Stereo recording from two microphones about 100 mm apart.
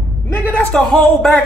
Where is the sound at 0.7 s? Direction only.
5° left (ahead or behind).